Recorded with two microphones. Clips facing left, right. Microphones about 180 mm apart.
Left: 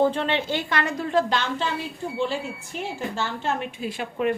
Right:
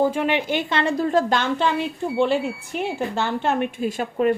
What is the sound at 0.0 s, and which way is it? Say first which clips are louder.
Speech: right 2 dB; 10° right (ahead or behind).